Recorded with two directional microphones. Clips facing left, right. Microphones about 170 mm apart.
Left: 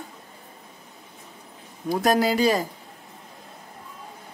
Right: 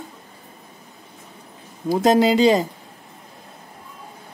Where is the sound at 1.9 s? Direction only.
25° right (ahead or behind).